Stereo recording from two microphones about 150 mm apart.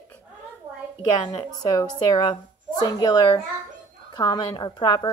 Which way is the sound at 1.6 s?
25° left (ahead or behind).